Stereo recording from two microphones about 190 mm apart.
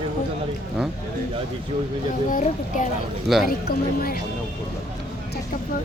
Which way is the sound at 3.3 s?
Centre (ahead or behind).